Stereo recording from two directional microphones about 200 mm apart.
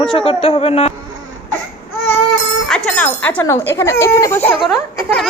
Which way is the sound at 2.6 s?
5° left (ahead or behind).